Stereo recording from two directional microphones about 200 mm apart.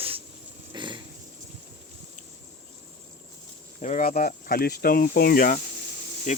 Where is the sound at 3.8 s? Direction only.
40° left (ahead or behind).